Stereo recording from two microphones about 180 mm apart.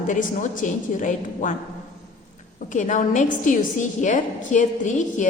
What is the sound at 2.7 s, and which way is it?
A woman's voice, 45° left (ahead or behind).